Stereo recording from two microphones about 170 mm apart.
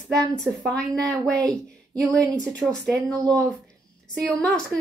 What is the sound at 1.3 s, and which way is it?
Speech, 20° right (ahead or behind).